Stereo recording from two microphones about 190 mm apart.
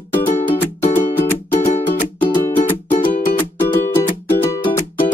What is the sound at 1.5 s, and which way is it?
Music, 35° left (ahead or behind).